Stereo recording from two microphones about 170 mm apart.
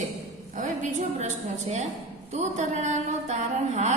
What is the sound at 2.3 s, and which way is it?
A woman's voice, 40° right (ahead or behind).